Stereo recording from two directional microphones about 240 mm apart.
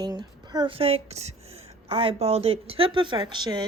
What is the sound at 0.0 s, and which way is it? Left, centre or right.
Speech, centre.